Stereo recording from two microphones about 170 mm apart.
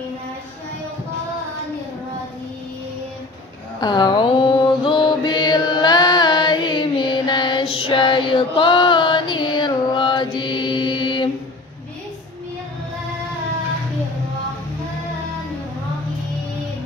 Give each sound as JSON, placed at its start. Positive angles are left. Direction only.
{"t": 3.8, "sound": "mantra", "side_deg": 25}